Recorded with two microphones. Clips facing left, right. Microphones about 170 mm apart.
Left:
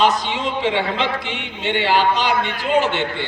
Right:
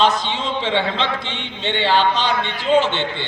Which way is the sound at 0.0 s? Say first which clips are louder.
Even; 25° right (ahead or behind).